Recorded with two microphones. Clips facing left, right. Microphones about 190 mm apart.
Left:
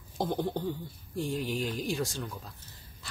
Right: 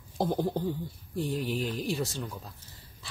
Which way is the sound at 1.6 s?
Centre (ahead or behind).